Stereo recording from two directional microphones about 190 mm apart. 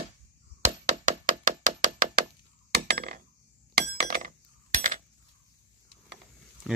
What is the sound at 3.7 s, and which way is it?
Chink, 50° right (ahead or behind).